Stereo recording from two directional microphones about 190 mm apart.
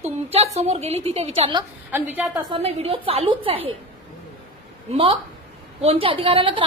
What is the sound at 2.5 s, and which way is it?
A woman's voice, 30° right (ahead or behind).